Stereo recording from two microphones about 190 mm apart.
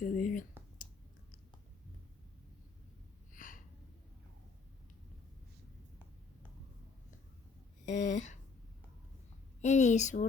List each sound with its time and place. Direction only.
0.0 s speech: 45° left (ahead or behind)
3.3 s gasp: 45° left (ahead or behind)
7.9 s a sound: 40° left (ahead or behind)
9.6 s a woman's voice: 40° left (ahead or behind)